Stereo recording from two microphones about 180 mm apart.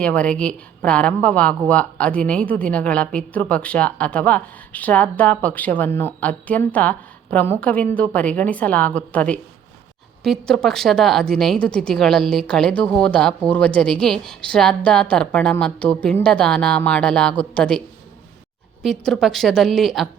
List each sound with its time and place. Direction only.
0.0 s a woman's voice: 5° left (ahead or behind)